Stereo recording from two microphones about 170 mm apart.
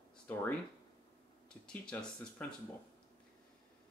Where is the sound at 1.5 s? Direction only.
5° left (ahead or behind).